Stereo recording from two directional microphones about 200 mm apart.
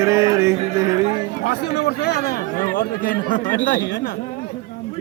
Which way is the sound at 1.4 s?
55° left (ahead or behind).